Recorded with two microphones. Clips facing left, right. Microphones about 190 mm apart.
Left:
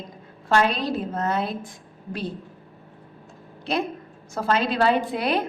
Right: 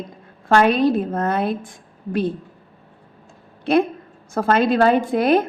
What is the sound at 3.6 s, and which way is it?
A woman's voice, 55° right (ahead or behind).